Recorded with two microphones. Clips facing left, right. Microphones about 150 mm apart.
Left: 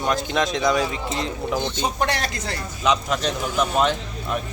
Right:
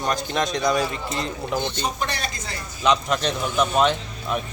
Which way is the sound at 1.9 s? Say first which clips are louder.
Left 4 dB; 75° left (ahead or behind).